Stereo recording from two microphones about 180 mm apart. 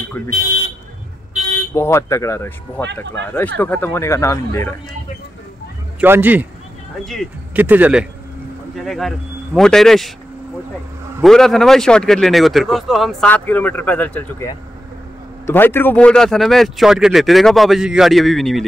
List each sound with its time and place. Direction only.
1.7 s speech: 15° left (ahead or behind)
5.9 s a man's voice: 10° right (ahead or behind)
7.5 s a man's voice: 10° right (ahead or behind)
11.2 s speech: centre (ahead or behind)